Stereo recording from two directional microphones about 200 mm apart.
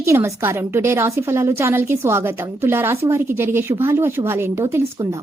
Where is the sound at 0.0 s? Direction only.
15° right (ahead or behind).